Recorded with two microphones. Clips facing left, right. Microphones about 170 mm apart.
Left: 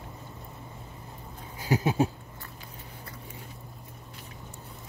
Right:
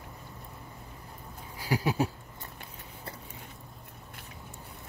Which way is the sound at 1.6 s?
20° left (ahead or behind).